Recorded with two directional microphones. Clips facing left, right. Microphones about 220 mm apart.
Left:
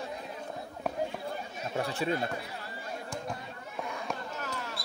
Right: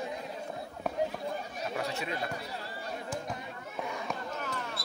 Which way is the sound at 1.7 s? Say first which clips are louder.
Left 5 dB; 30° left (ahead or behind).